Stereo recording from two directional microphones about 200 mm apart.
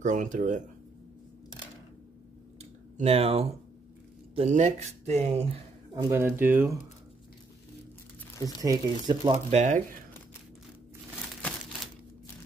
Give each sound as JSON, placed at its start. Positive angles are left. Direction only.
{"t": 0.0, "sound": "speech", "side_deg": -40}
{"t": 2.6, "sound": "a sound", "side_deg": -30}
{"t": 4.4, "sound": "speech", "side_deg": -35}
{"t": 5.9, "sound": "speech", "side_deg": -10}
{"t": 8.5, "sound": "speech", "side_deg": -20}